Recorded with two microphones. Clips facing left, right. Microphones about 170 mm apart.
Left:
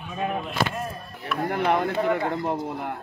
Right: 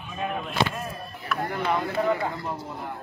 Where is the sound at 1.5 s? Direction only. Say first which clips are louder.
Left 5 dB; 60° left (ahead or behind).